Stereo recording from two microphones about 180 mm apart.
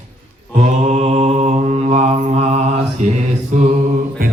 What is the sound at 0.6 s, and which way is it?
Mantra, 40° right (ahead or behind).